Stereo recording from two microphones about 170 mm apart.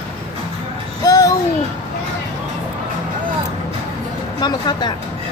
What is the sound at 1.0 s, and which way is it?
Speech, 20° left (ahead or behind).